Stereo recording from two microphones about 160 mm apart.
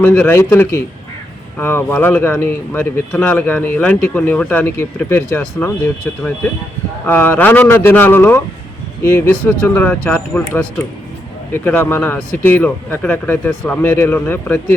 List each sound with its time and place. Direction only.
0.0 s speech: 15° left (ahead or behind)
7.1 s speech: 10° left (ahead or behind)